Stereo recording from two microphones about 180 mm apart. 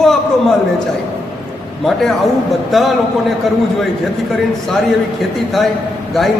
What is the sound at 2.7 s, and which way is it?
Speech, centre (ahead or behind).